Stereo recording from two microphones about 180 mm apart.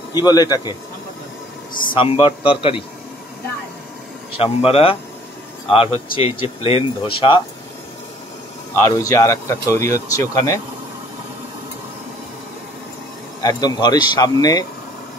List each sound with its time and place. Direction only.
0.1 s speech: 20° left (ahead or behind)
2.0 s speech: 30° left (ahead or behind)
4.4 s speech: 30° left (ahead or behind)
8.8 s speech: 15° left (ahead or behind)
13.4 s speech: 20° left (ahead or behind)